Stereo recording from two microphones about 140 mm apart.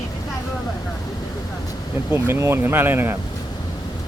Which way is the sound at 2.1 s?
15° right (ahead or behind).